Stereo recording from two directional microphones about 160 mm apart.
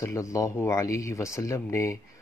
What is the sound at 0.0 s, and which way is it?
Speech, 20° left (ahead or behind).